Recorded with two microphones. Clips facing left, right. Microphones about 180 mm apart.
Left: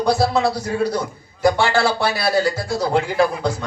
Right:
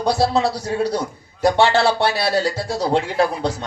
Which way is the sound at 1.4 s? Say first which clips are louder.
Right 1 dB; 30° right (ahead or behind).